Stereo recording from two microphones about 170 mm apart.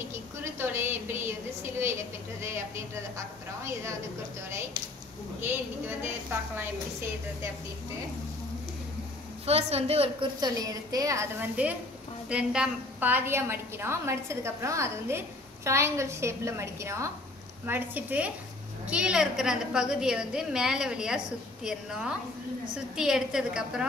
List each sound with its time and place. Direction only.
0.1 s a sound: 15° right (ahead or behind)
2.4 s a woman's voice: 15° right (ahead or behind)
9.5 s a woman's voice: 35° right (ahead or behind); by 23.9 s 5° right (ahead or behind)